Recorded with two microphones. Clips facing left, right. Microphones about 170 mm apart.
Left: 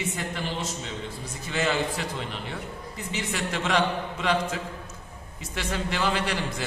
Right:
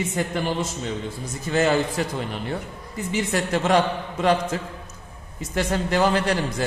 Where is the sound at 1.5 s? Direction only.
45° right (ahead or behind).